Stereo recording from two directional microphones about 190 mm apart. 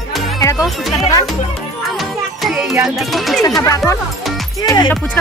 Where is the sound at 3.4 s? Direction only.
15° left (ahead or behind).